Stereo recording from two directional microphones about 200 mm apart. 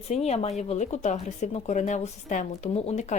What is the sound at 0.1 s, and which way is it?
A woman's voice, 30° left (ahead or behind).